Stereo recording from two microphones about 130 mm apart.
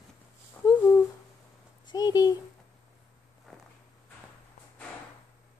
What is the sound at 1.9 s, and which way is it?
Speech, 30° left (ahead or behind).